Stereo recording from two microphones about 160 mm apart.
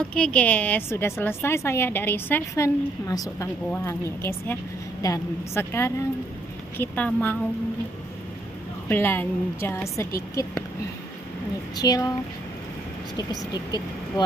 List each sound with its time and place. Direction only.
0.1 s a woman's voice: 5° left (ahead or behind)
8.8 s a woman's voice: 10° left (ahead or behind)
11.7 s a woman's voice: 25° left (ahead or behind)